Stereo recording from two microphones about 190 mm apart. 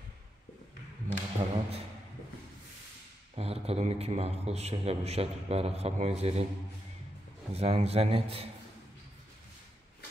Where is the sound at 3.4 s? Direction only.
30° right (ahead or behind).